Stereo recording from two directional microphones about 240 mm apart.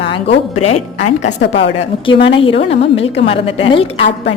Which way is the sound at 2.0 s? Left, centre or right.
Left.